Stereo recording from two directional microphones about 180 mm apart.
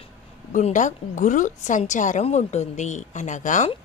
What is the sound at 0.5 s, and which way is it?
A woman's voice, 45° left (ahead or behind).